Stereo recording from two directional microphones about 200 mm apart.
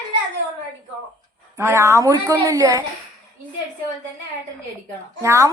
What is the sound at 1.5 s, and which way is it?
A woman's voice, 10° right (ahead or behind).